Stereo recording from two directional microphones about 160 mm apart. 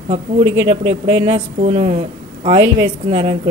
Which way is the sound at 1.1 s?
40° right (ahead or behind).